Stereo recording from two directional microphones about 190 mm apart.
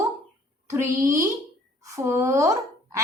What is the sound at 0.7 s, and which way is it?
A woman's voice, 15° right (ahead or behind).